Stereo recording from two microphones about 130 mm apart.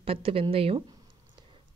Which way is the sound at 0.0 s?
45° right (ahead or behind).